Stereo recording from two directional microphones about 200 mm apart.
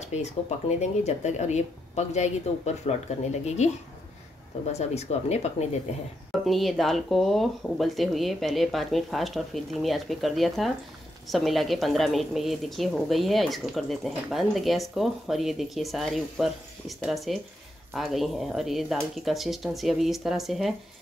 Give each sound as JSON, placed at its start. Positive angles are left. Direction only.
{"t": 0.0, "sound": "speech", "side_deg": 35}
{"t": 4.7, "sound": "speech", "side_deg": 30}
{"t": 6.4, "sound": "a woman's voice", "side_deg": 0}